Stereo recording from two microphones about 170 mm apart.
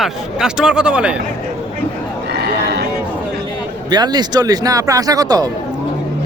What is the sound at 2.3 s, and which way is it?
Neigh, 75° right (ahead or behind).